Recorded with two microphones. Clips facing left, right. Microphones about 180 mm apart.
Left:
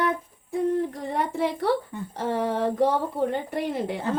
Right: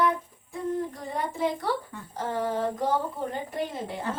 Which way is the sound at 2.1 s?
70° left (ahead or behind).